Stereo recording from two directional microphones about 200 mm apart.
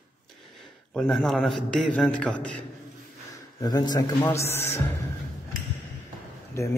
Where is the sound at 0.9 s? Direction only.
Centre (ahead or behind).